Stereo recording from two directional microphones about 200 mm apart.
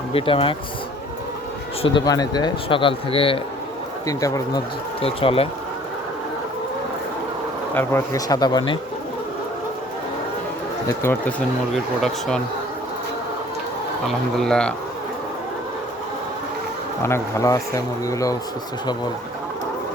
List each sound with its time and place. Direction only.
0.1 s speech: 25° left (ahead or behind)
1.8 s speech: 25° left (ahead or behind)
4.0 s speech: 15° left (ahead or behind)
4.9 s speech: 30° left (ahead or behind)
7.7 s speech: 10° left (ahead or behind)
10.8 s speech: 10° left (ahead or behind)
14.3 s speech: 5° left (ahead or behind)
17.0 s speech: 15° left (ahead or behind)